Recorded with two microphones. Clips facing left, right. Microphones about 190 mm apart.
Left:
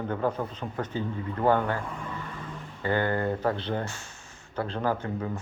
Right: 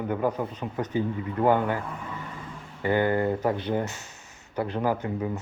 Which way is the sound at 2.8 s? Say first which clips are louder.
Right 3 dB; 15° right (ahead or behind).